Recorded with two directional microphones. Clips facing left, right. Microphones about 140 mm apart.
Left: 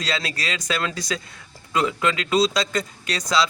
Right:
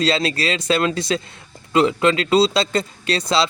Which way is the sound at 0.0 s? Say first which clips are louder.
Right 8 dB; 30° right (ahead or behind).